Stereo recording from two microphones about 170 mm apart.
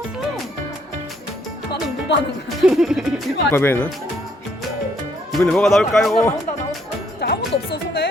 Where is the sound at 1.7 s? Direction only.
90° left.